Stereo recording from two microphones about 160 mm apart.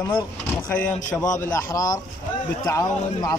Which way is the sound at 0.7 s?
10° left (ahead or behind).